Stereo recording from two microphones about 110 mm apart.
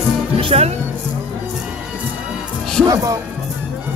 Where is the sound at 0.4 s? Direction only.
60° right (ahead or behind).